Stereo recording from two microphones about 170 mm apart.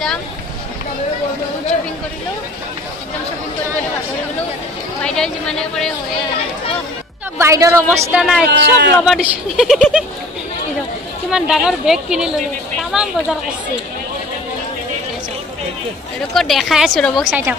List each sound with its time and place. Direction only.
5.0 s a woman's voice: 5° left (ahead or behind)
7.3 s a woman's voice: 15° right (ahead or behind)
8.2 s a woman's voice: centre (ahead or behind)
8.5 s speech: 90° right
9.0 s a woman's voice: centre (ahead or behind)
11.2 s a woman's voice: centre (ahead or behind)
16.3 s a woman's voice: centre (ahead or behind)